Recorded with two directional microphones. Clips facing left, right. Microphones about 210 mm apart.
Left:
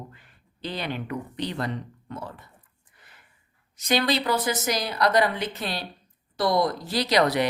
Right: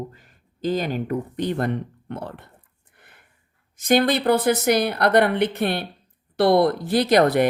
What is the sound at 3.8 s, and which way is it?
Speech, 50° right (ahead or behind).